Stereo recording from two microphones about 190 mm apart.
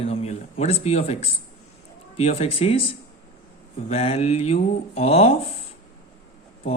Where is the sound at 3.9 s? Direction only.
35° left (ahead or behind).